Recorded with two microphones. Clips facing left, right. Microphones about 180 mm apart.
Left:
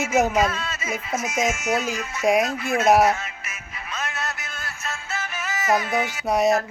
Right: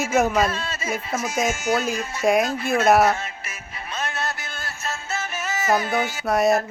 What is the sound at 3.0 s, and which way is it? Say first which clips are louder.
Music: even; 30° right (ahead or behind).